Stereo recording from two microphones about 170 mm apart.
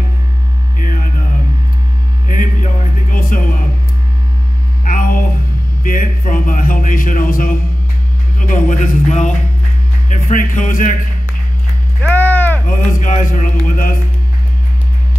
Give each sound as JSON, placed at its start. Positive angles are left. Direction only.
{"t": 2.2, "sound": "music", "side_deg": 50}
{"t": 4.8, "sound": "hum", "side_deg": 55}
{"t": 5.9, "sound": "a man's voice", "side_deg": 55}
{"t": 12.0, "sound": "a sound", "side_deg": 10}
{"t": 12.6, "sound": "a man's voice", "side_deg": 50}